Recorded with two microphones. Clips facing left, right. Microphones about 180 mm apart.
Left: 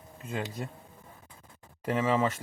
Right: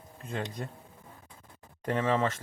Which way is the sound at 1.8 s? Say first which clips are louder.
Left 1 dB; 5° left (ahead or behind).